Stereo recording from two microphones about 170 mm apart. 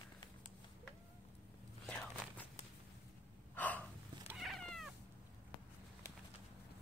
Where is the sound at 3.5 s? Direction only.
10° left (ahead or behind).